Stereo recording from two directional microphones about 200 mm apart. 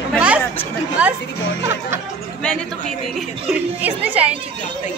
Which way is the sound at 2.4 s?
5° left (ahead or behind).